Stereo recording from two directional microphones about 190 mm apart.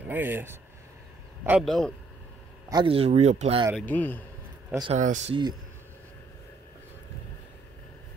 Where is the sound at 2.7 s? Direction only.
25° right (ahead or behind).